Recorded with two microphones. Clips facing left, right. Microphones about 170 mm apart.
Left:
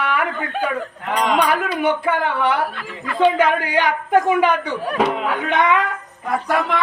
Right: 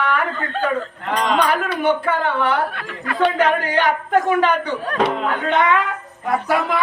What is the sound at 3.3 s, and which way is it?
A woman's voice, 15° left (ahead or behind).